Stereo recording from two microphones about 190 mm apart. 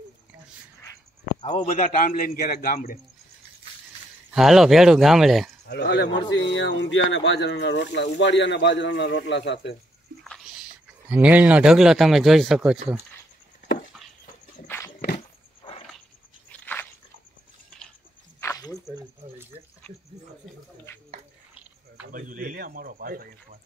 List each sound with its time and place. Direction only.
1.4 s speech: 25° left (ahead or behind)
2.0 s a man's voice: 45° left (ahead or behind)
4.3 s speech: centre (ahead or behind)
5.7 s speech: 60° left (ahead or behind)
6.5 s speech: 75° left (ahead or behind)
11.1 s speech: 10° right (ahead or behind)
16.4 s biting: 10° left (ahead or behind)
18.4 s snake: 15° left (ahead or behind)
22.1 s a sound: 45° right (ahead or behind)